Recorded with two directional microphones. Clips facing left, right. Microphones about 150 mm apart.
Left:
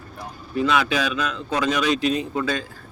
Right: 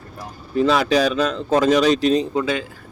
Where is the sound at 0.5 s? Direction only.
35° right (ahead or behind).